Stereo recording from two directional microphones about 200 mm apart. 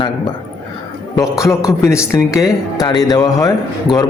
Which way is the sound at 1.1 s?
15° left (ahead or behind).